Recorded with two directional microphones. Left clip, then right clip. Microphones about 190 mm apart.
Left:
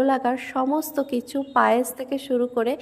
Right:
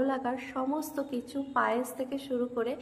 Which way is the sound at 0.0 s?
40° left (ahead or behind).